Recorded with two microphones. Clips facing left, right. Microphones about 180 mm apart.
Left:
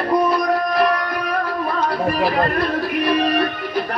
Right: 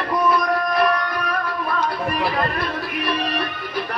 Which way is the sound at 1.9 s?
35° left (ahead or behind).